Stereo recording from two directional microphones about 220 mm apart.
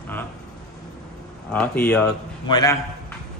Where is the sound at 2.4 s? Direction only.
15° left (ahead or behind).